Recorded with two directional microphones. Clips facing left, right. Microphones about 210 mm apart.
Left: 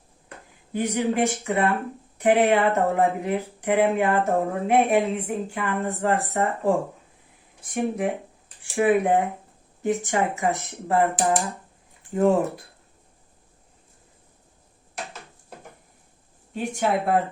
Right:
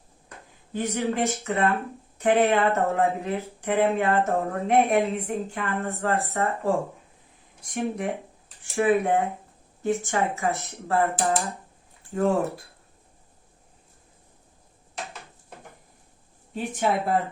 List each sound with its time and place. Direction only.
0.7 s speech: 15° left (ahead or behind)
4.4 s speech: 5° left (ahead or behind)
5.5 s speech: 15° left (ahead or behind)
8.7 s speech: 15° left (ahead or behind)
16.6 s speech: centre (ahead or behind)